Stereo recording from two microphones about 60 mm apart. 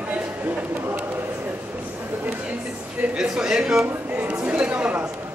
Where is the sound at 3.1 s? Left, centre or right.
Centre.